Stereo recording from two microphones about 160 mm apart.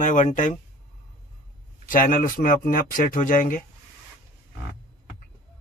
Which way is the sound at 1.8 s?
60° left (ahead or behind).